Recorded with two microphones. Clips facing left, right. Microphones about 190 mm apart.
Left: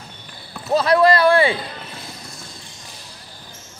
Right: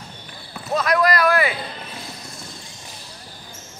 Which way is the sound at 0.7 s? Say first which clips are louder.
Left 4 dB; 30° left (ahead or behind).